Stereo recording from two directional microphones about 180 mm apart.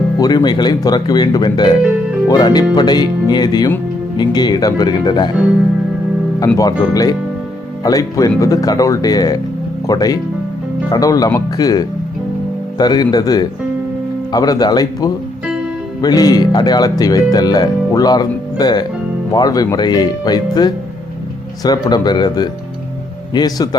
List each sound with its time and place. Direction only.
0.2 s speech: 20° left (ahead or behind)
6.6 s speech: 20° left (ahead or behind)